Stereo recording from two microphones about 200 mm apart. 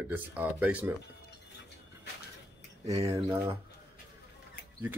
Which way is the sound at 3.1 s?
15° right (ahead or behind).